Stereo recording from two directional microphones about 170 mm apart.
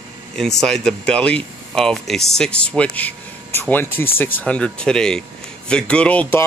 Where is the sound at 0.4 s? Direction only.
5° left (ahead or behind).